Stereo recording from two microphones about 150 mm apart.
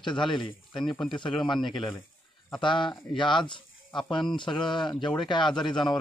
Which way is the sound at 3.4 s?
30° left (ahead or behind).